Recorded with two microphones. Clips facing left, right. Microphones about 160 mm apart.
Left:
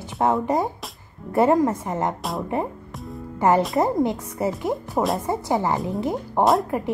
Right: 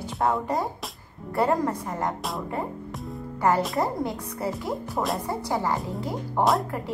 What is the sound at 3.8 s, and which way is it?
Speech, 20° left (ahead or behind).